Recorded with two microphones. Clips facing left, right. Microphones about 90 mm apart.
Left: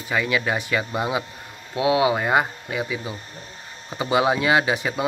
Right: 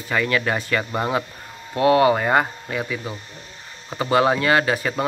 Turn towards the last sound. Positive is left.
turn(degrees=15)  # may be behind; listen again after turning